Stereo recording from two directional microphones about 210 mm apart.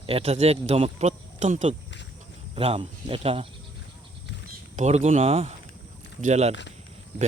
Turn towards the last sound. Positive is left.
turn(degrees=-35)  # may be behind; listen again after turning